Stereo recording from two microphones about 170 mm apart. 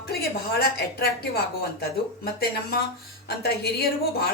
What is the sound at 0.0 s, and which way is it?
A woman's voice, 65° left (ahead or behind).